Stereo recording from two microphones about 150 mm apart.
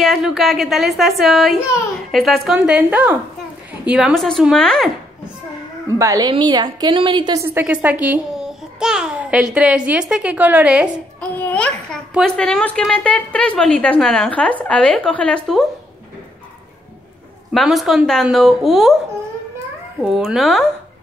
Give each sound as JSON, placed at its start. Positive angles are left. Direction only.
{"t": 0.0, "sound": "a woman's voice", "side_deg": 0}
{"t": 5.9, "sound": "a woman's voice", "side_deg": -20}
{"t": 7.3, "sound": "a child's voice", "side_deg": -15}
{"t": 11.1, "sound": "a child's voice", "side_deg": 10}
{"t": 17.5, "sound": "a woman's voice", "side_deg": 0}
{"t": 20.0, "sound": "a woman's voice", "side_deg": -5}